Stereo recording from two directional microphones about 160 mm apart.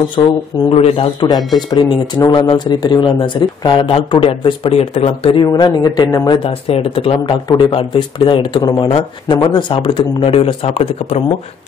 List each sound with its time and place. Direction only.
0.7 s speech: 35° left (ahead or behind)
5.4 s speech: 25° left (ahead or behind); by 11.2 s 40° left (ahead or behind)